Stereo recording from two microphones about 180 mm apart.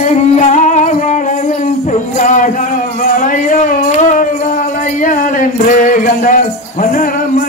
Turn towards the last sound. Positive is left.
turn(degrees=45)  # may be behind; listen again after turning